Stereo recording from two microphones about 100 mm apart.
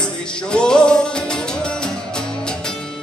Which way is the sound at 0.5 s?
10° left (ahead or behind).